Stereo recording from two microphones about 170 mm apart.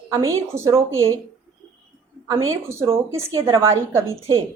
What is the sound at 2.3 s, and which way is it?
A woman's voice, 15° right (ahead or behind).